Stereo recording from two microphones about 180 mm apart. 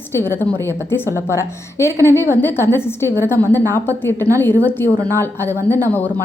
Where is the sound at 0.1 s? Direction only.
15° left (ahead or behind).